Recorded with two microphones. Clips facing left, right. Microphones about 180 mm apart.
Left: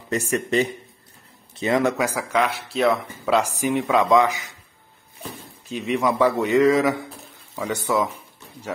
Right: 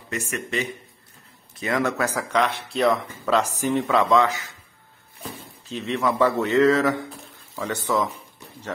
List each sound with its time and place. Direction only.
0.1 s speech: 35° left (ahead or behind)
1.6 s speech: 20° left (ahead or behind)
5.7 s speech: 10° left (ahead or behind)